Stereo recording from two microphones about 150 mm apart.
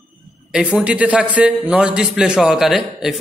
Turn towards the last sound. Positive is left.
turn(degrees=0)  # may be behind; listen again after turning